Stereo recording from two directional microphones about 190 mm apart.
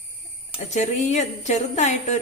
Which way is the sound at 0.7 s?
40° left (ahead or behind).